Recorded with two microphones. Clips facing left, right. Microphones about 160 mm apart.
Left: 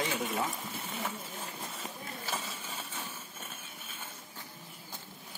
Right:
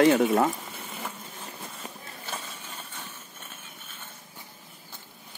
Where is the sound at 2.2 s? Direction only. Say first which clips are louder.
Right 1 dB; centre (ahead or behind).